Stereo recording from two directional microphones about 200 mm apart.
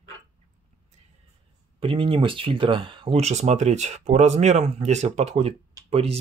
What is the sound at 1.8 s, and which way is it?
Speech, 25° right (ahead or behind).